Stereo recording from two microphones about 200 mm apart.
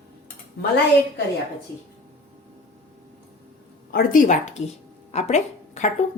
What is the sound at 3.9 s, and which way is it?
A woman's voice, 45° left (ahead or behind).